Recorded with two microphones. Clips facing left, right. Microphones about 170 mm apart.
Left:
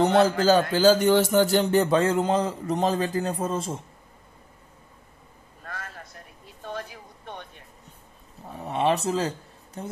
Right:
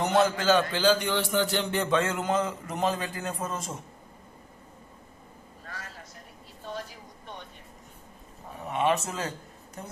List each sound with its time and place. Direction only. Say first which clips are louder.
0.0 s a man's voice: left 5 dB; 35° left (ahead or behind)
5.7 s a sound: left 5 dB; 55° left (ahead or behind)
8.5 s a woman's voice: left 2 dB; 35° left (ahead or behind)